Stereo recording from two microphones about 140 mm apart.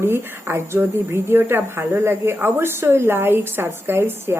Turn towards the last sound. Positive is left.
turn(degrees=-15)  # may be behind; listen again after turning